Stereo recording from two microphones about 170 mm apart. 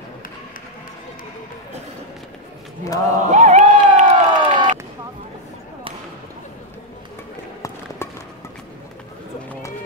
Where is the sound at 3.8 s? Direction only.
45° right (ahead or behind).